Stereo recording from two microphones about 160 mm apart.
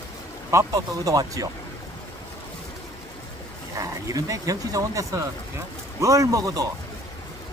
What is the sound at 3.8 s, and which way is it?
Speech, 20° right (ahead or behind).